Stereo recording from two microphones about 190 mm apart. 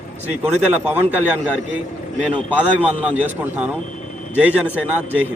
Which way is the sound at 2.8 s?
5° right (ahead or behind).